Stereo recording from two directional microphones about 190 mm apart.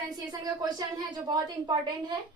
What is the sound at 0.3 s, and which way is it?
A woman's voice, 20° right (ahead or behind).